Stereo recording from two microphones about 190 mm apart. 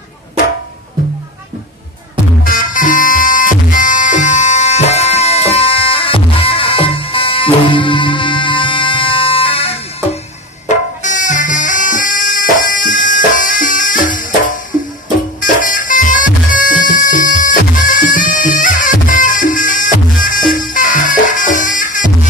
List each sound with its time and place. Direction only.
2.4 s music: 45° left (ahead or behind); by 9.8 s 30° left (ahead or behind)
11.0 s music: 40° left (ahead or behind)
15.4 s music: 45° left (ahead or behind)